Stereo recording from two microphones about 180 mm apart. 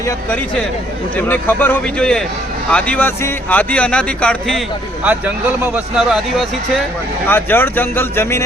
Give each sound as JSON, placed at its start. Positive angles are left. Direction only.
{"t": 1.1, "sound": "a man's voice", "side_deg": 10}
{"t": 5.0, "sound": "speech", "side_deg": -10}
{"t": 7.3, "sound": "a man's voice", "side_deg": 10}